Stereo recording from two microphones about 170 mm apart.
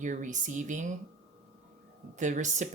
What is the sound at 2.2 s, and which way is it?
Speech, 45° right (ahead or behind).